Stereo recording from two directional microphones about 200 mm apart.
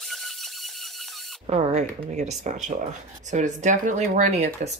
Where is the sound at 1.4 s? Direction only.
35° right (ahead or behind).